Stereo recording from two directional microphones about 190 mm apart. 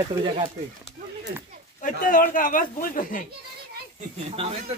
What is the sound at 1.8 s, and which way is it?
Speech, 45° left (ahead or behind).